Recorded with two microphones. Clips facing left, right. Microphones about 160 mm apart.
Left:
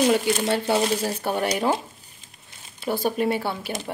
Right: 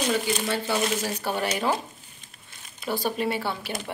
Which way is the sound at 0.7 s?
30° left (ahead or behind).